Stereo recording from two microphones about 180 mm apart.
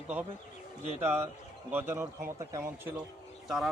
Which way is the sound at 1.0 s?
10° right (ahead or behind).